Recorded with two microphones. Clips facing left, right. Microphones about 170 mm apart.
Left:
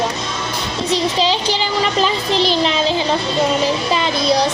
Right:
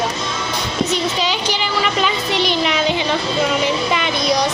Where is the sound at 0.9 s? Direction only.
30° left (ahead or behind).